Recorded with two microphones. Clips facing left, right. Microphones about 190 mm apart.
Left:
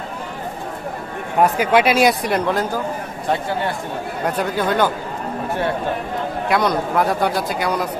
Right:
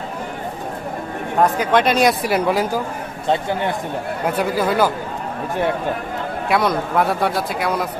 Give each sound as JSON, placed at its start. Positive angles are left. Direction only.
{"t": 1.4, "sound": "speech", "side_deg": 10}
{"t": 3.2, "sound": "a man's voice", "side_deg": -20}
{"t": 4.3, "sound": "speech", "side_deg": -5}
{"t": 6.5, "sound": "speech", "side_deg": 0}